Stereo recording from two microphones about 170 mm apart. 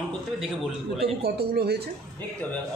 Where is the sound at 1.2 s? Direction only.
70° right (ahead or behind).